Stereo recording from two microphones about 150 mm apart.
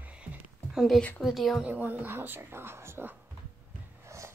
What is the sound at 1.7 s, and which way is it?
Speech, 10° right (ahead or behind).